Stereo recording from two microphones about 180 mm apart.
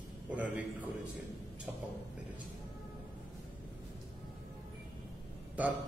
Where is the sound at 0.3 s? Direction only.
10° right (ahead or behind).